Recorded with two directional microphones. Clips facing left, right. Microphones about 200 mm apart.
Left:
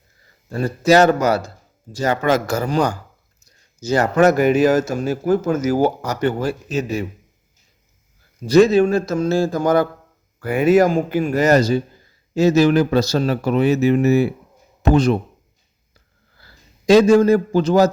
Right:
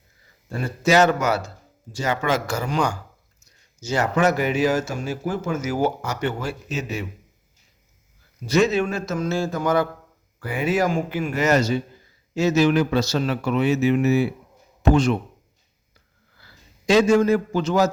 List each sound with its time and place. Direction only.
0.6 s speech: 40° left (ahead or behind)
8.4 s speech: 35° left (ahead or behind)
16.4 s a man's voice: 40° left (ahead or behind)